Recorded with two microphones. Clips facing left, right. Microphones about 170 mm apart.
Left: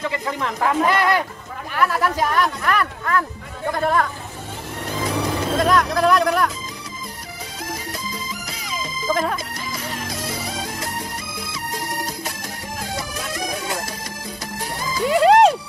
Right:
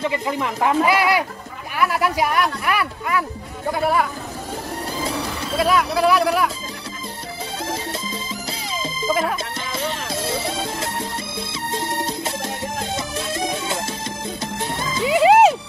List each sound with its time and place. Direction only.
0.0 s speech: 20° right (ahead or behind)
0.8 s speech: 10° right (ahead or behind)
5.6 s speech: 5° right (ahead or behind)
7.6 s music: 25° right (ahead or behind)
9.1 s music: 5° right (ahead or behind)
9.7 s music: 25° right (ahead or behind)
15.0 s music: 5° right (ahead or behind)